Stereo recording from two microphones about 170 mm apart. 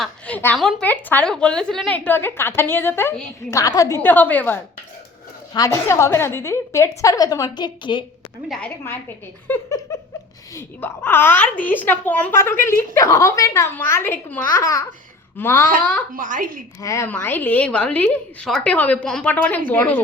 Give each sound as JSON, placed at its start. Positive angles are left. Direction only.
{"t": 0.0, "sound": "a woman's voice", "side_deg": 10}
{"t": 8.4, "sound": "a woman's voice", "side_deg": 5}
{"t": 9.5, "sound": "a woman's voice", "side_deg": 15}
{"t": 16.1, "sound": "a woman's voice", "side_deg": -50}
{"t": 16.8, "sound": "a woman's voice", "side_deg": 15}